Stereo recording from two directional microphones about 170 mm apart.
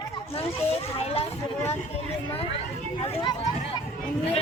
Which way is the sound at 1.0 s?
35° left (ahead or behind).